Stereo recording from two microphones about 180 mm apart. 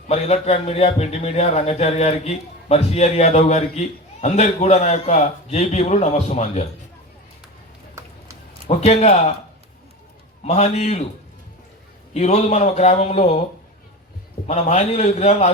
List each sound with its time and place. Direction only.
0.1 s a man's voice: 35° left (ahead or behind)
8.0 s a sound: 15° right (ahead or behind)
8.6 s a man's voice: 35° left (ahead or behind)
10.4 s a man's voice: 40° left (ahead or behind)
12.1 s a man's voice: 40° left (ahead or behind)
14.4 s a man's voice: 40° left (ahead or behind)